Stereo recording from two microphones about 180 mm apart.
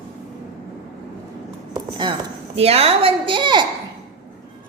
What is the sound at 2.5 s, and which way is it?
A woman's voice, 35° right (ahead or behind).